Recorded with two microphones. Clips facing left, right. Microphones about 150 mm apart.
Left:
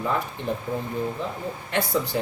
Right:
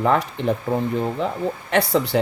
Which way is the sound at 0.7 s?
70° right (ahead or behind).